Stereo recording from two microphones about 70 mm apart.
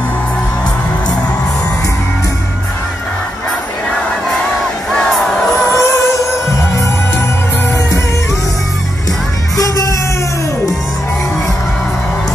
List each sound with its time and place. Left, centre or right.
5.8 s music: left
9.6 s music: left